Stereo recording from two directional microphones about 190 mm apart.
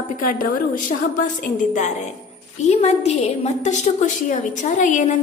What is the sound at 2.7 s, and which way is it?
A woman's voice, 35° left (ahead or behind).